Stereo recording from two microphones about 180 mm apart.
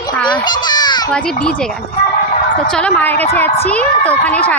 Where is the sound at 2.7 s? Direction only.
10° left (ahead or behind).